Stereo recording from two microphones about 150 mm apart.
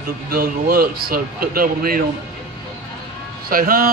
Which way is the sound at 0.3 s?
80° right.